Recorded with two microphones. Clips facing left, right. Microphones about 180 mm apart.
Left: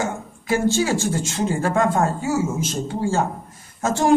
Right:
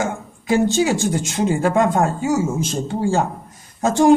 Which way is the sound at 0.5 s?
20° right (ahead or behind).